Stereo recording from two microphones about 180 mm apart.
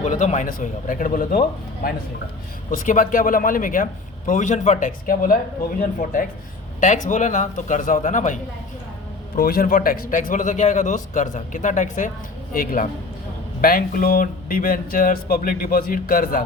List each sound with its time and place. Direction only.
0.0 s speech: 40° left (ahead or behind)
9.3 s speech: 55° left (ahead or behind)